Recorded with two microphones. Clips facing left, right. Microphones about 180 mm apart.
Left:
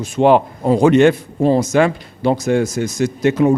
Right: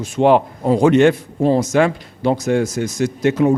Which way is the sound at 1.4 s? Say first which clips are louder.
Left 1 dB; 25° left (ahead or behind).